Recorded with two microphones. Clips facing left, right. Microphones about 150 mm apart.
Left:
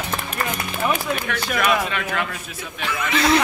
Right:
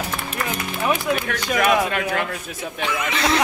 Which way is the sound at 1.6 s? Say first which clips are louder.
Right 3 dB; 45° right (ahead or behind).